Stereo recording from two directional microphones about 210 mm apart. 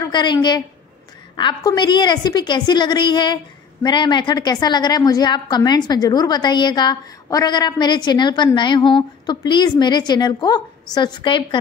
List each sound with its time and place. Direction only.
0.0 s a woman's voice: 20° left (ahead or behind)